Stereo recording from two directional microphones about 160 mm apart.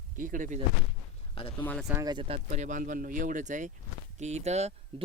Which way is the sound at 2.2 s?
45° right (ahead or behind).